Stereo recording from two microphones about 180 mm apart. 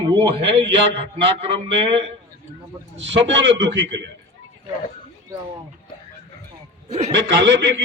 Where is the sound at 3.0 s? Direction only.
90° right; by 4.1 s 75° right (ahead or behind).